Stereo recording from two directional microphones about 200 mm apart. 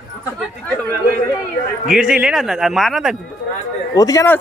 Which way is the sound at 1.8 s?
5° right (ahead or behind).